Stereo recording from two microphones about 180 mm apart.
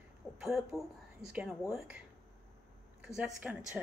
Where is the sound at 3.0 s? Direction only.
5° right (ahead or behind).